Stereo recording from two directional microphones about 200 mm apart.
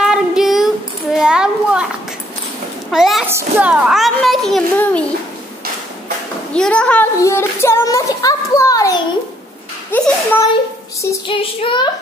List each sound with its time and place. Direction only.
0.0 s child singing: 5° right (ahead or behind)
1.1 s a sound: 5° right (ahead or behind)
2.9 s a child's voice: centre (ahead or behind)
6.5 s a woman's voice: 5° left (ahead or behind)
11.0 s child singing: 20° left (ahead or behind)